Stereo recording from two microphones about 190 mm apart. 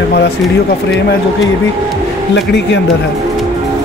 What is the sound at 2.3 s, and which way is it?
Speech, 65° left (ahead or behind).